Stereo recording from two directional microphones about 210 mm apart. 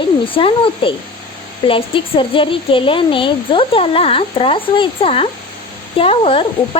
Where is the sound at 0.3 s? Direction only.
25° left (ahead or behind).